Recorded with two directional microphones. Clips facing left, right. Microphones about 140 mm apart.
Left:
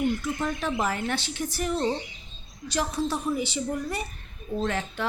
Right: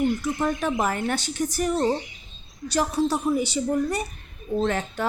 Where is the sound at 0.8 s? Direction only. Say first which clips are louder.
Right 3 dB; 45° right (ahead or behind).